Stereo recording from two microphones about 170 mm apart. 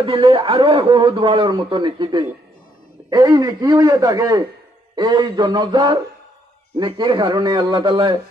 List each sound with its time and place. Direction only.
0.0 s a man's voice: 30° right (ahead or behind)